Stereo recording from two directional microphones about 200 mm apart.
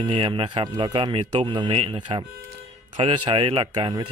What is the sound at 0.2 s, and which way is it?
Speech, 25° right (ahead or behind).